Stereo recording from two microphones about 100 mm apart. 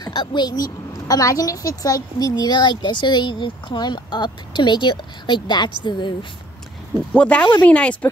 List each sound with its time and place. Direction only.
0.0 s a woman's voice: 50° left (ahead or behind)
7.2 s speech: 10° left (ahead or behind)